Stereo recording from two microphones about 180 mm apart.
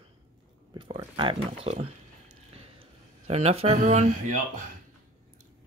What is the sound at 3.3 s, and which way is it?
Speech, 35° right (ahead or behind).